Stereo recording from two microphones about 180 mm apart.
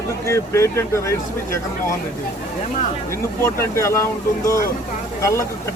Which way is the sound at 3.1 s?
15° left (ahead or behind).